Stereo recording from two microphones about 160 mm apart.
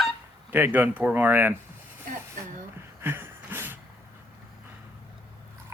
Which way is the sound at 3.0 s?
15° right (ahead or behind).